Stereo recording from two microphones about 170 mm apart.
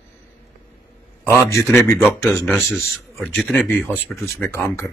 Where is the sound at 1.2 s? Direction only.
15° left (ahead or behind).